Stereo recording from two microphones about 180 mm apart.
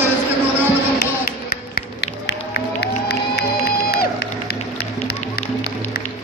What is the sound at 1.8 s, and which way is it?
Music, 70° left (ahead or behind).